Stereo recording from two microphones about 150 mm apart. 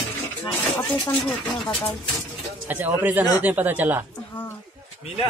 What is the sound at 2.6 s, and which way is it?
Speech, 10° right (ahead or behind).